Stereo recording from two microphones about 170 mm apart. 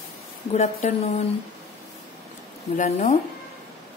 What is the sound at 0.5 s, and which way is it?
Speech, 40° left (ahead or behind).